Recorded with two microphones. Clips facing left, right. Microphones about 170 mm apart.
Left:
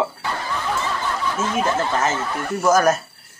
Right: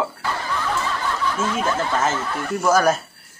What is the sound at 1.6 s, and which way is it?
Speech, 15° left (ahead or behind).